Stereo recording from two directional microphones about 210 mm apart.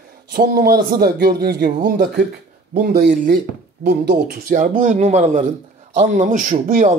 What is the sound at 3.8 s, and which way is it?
Speech, 50° right (ahead or behind).